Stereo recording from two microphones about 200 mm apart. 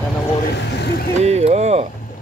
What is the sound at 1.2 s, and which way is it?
Mechanisms, 35° right (ahead or behind).